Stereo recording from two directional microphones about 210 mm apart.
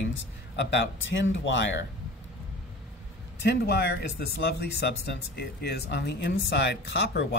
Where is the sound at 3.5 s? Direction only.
55° left (ahead or behind).